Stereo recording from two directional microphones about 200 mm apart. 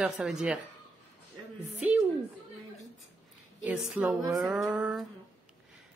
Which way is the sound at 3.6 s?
5° right (ahead or behind).